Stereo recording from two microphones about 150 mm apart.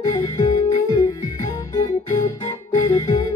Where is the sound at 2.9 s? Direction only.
25° left (ahead or behind).